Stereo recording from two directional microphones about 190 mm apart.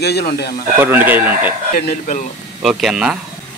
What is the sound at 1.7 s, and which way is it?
Speech, 50° left (ahead or behind).